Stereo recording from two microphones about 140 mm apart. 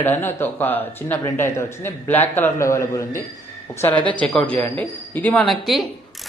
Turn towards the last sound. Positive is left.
turn(degrees=0)  # may be behind; listen again after turning